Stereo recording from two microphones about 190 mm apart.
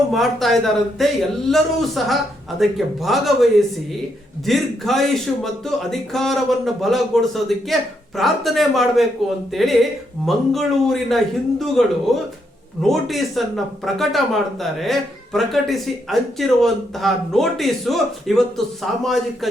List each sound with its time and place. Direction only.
0.1 s a man's voice: centre (ahead or behind)